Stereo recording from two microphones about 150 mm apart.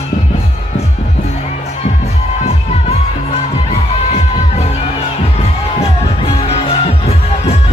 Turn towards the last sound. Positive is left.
turn(degrees=40)  # may be behind; listen again after turning